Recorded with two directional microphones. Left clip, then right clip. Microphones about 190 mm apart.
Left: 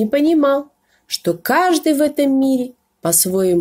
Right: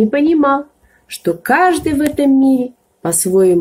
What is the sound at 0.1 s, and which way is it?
Speech, 45° left (ahead or behind).